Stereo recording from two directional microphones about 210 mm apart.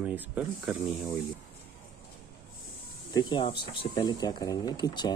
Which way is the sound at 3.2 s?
20° left (ahead or behind).